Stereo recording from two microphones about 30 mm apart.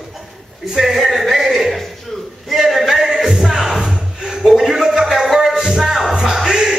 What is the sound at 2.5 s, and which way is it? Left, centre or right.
Male singing, centre.